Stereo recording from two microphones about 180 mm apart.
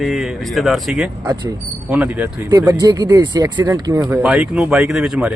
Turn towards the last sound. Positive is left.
turn(degrees=-5)  # may be behind; listen again after turning